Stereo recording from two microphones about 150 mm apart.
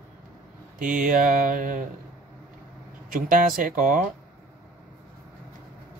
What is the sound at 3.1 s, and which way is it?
Speech, 65° right (ahead or behind).